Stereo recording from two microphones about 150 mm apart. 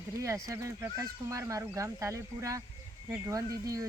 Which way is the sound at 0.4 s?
20° right (ahead or behind).